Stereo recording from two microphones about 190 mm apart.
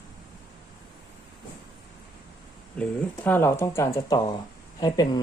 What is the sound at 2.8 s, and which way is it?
Speech, 10° left (ahead or behind).